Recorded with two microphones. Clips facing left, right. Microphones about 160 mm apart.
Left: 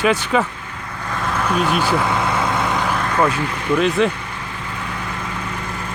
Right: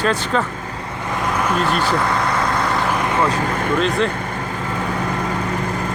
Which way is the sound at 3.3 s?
45° right (ahead or behind).